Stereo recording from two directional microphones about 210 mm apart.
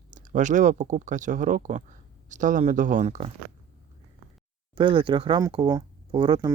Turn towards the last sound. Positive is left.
turn(degrees=-20)  # may be behind; listen again after turning